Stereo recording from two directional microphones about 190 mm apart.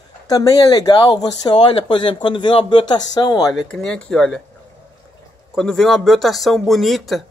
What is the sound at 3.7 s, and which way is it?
Speech, 5° left (ahead or behind).